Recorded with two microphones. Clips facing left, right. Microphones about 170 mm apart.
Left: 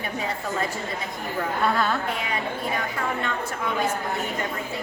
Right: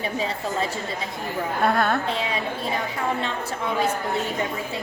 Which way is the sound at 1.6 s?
55° right (ahead or behind).